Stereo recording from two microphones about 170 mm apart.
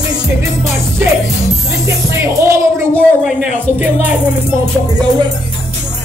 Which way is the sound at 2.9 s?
Centre (ahead or behind).